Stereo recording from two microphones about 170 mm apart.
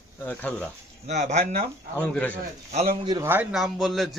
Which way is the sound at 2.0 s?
5° left (ahead or behind).